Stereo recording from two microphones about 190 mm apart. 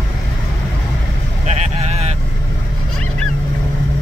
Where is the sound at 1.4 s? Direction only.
35° right (ahead or behind).